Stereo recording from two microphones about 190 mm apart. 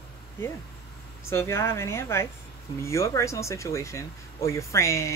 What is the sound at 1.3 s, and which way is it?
Speech, 15° left (ahead or behind).